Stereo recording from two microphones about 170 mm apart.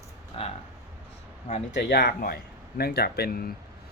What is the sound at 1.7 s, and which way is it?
Speech, 85° left.